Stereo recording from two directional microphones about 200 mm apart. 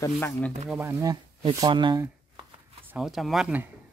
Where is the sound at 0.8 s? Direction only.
15° right (ahead or behind).